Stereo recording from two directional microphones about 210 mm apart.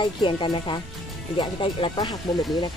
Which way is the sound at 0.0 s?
20° left (ahead or behind).